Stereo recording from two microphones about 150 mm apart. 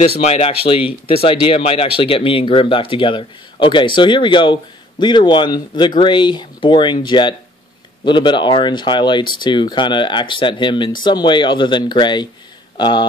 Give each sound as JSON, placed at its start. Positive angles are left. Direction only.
{"t": 0.2, "sound": "speech", "side_deg": 45}